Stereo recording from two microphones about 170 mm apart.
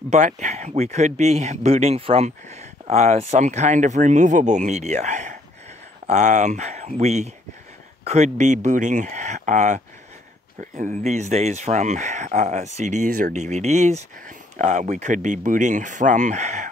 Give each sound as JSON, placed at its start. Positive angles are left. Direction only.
{"t": 0.1, "sound": "speech", "side_deg": -45}